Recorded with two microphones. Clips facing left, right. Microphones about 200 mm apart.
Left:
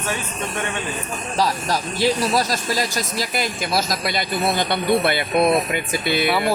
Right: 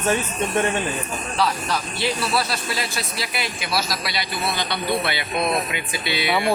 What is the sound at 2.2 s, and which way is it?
Speech, 40° left (ahead or behind).